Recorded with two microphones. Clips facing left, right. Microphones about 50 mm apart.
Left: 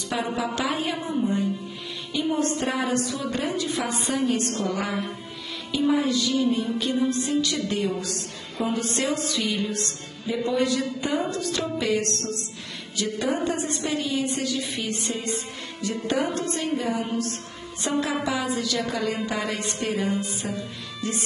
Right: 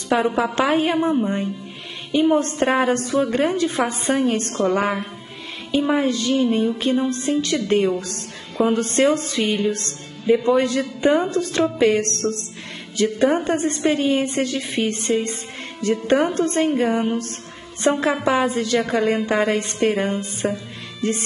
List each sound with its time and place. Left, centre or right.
0.1 s a woman's voice: right